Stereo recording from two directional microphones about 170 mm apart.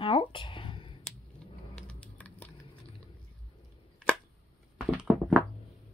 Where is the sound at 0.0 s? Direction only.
30° left (ahead or behind).